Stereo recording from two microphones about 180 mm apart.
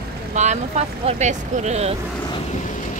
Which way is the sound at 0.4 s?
40° right (ahead or behind).